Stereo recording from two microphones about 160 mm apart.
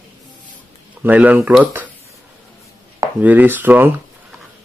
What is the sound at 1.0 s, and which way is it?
Speech, 10° right (ahead or behind).